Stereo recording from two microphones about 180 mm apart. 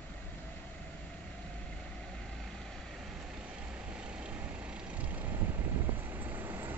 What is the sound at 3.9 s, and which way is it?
Vehicle, 5° right (ahead or behind).